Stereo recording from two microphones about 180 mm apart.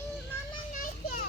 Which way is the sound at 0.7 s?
50° left (ahead or behind).